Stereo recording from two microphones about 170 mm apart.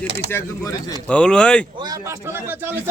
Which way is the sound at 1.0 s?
5° left (ahead or behind).